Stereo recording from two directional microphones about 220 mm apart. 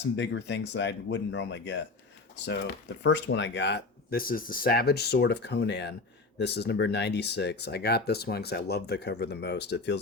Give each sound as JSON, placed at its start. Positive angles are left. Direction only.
{"t": 0.2, "sound": "speech", "side_deg": 50}
{"t": 3.0, "sound": "speech", "side_deg": 55}